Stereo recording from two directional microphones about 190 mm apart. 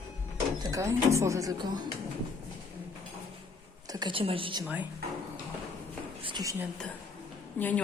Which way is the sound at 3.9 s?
25° right (ahead or behind).